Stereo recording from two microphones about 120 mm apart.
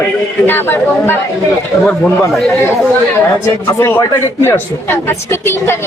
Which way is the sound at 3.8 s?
20° left (ahead or behind).